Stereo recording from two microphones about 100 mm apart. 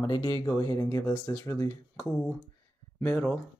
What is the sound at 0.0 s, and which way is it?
Speech, 40° left (ahead or behind).